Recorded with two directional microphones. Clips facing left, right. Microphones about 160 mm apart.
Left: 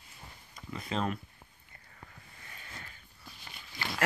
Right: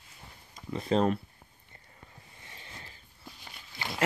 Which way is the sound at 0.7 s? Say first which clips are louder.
Right 8 dB; 35° right (ahead or behind).